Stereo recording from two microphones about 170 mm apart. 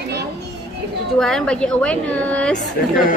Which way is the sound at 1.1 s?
5° left (ahead or behind).